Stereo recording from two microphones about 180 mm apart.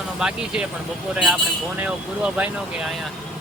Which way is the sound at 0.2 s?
5° right (ahead or behind).